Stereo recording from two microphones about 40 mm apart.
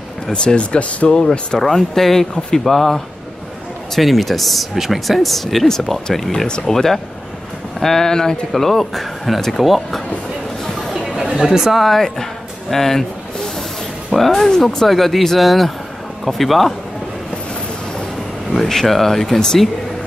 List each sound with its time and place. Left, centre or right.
0.3 s speech: left
1.1 s speech: left
1.6 s speech: centre
10.9 s chatter: centre
11.2 s speech: centre
11.8 s a sound: centre
14.1 s speech: centre
18.5 s speech: centre